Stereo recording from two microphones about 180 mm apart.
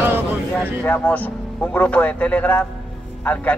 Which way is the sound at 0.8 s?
10° left (ahead or behind).